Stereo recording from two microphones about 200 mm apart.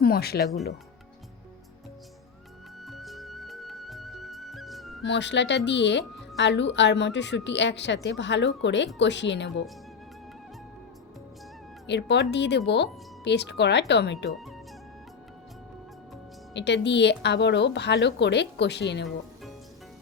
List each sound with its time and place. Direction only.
0.0 s speech: 50° left (ahead or behind)
2.8 s music: centre (ahead or behind)
5.0 s speech: 60° left (ahead or behind)
11.9 s speech: 60° left (ahead or behind)
14.3 s speech: centre (ahead or behind)
16.6 s speech: 60° left (ahead or behind)